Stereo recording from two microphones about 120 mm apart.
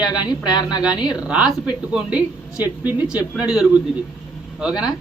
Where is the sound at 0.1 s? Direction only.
35° left (ahead or behind).